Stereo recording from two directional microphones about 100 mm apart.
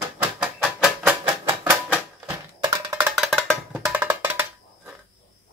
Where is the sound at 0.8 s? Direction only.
20° right (ahead or behind).